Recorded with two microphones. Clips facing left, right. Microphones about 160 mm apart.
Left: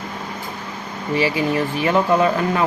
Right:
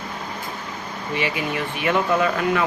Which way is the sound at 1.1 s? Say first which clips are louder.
Left 6 dB; 35° left (ahead or behind).